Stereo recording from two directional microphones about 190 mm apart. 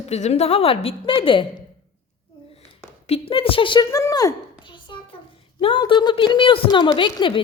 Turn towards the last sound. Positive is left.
turn(degrees=25)  # may be behind; listen again after turning